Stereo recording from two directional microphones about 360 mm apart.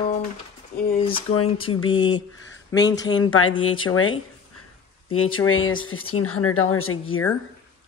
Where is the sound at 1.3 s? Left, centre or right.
Left.